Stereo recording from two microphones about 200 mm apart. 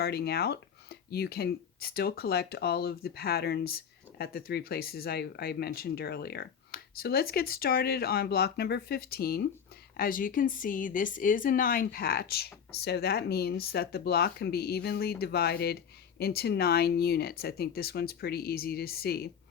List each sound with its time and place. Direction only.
0.0 s speech: 50° left (ahead or behind)